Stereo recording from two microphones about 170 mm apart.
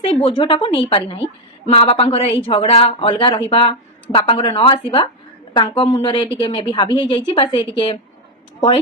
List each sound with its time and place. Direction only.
0.0 s a woman's voice: 30° left (ahead or behind)